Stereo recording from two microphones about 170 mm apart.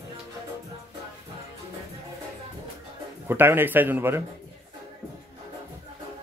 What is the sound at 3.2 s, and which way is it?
Speech, 10° right (ahead or behind).